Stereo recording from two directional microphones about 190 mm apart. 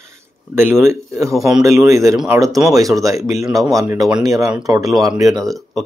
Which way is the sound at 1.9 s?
15° right (ahead or behind).